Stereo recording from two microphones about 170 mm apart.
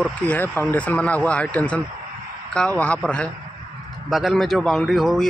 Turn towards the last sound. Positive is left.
turn(degrees=0)  # may be behind; listen again after turning